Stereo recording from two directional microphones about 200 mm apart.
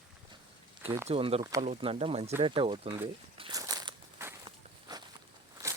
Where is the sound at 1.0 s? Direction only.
30° right (ahead or behind).